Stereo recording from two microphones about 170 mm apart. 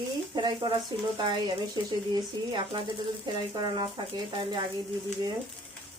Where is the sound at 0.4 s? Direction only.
25° right (ahead or behind).